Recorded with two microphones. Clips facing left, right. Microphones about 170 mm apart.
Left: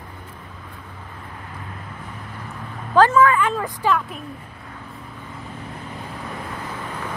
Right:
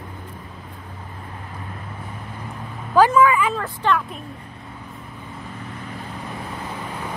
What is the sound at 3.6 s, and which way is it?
Speech, 5° left (ahead or behind).